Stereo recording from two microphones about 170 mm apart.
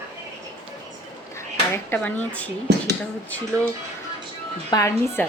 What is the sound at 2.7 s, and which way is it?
Speech, 90° right.